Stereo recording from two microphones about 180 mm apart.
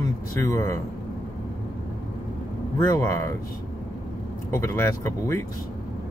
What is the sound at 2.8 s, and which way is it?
Speech, 15° left (ahead or behind).